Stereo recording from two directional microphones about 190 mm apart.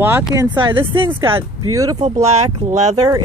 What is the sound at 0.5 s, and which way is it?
Speech, 25° right (ahead or behind).